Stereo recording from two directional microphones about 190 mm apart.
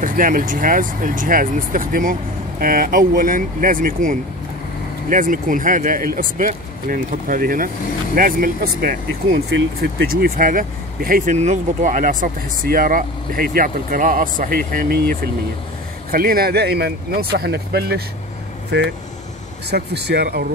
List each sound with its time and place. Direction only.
0.0 s speech: 45° right (ahead or behind)